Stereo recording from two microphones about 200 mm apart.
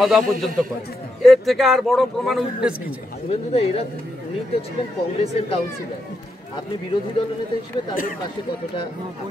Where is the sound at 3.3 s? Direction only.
30° left (ahead or behind).